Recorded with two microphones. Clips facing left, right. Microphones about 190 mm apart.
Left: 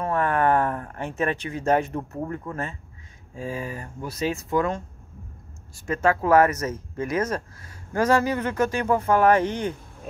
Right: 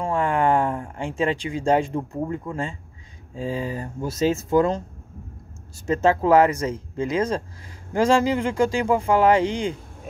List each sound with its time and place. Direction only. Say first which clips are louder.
0.0 s a sound: right 1 dB; 10° right (ahead or behind)
1.0 s speech: right 3 dB; 10° right (ahead or behind)
3.3 s speech: right 4 dB; 30° right (ahead or behind)
5.9 s speech: right 3 dB; 20° right (ahead or behind)